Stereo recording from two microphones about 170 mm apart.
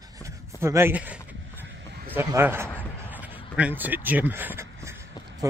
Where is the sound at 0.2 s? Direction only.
15° right (ahead or behind).